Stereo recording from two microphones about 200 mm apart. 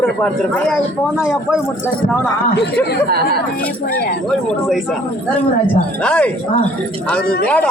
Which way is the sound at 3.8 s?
50° left (ahead or behind).